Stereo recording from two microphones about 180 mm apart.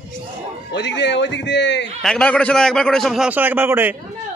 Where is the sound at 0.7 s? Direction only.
75° left (ahead or behind).